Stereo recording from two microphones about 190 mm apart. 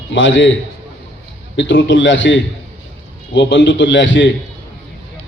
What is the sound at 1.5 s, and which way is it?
A man's voice, 75° left (ahead or behind).